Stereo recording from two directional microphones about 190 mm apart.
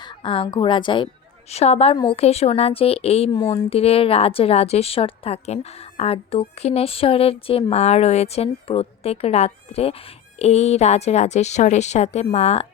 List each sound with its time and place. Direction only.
0.0 s a woman's voice: 25° left (ahead or behind)